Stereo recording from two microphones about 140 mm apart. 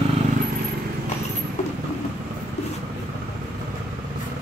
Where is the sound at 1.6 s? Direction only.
55° left (ahead or behind).